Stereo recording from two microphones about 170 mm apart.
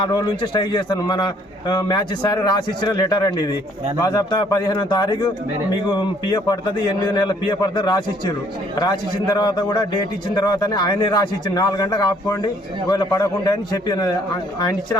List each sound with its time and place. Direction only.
0.0 s a man's voice: 25° left (ahead or behind)